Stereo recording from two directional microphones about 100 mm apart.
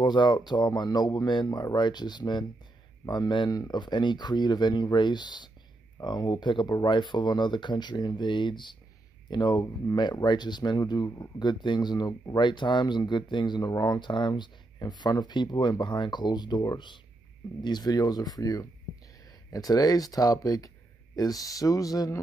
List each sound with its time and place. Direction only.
0.0 s speech: 50° left (ahead or behind)